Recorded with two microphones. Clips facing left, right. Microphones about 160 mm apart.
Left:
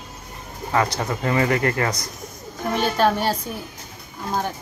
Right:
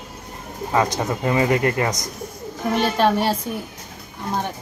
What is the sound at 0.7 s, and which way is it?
Speech, 20° right (ahead or behind).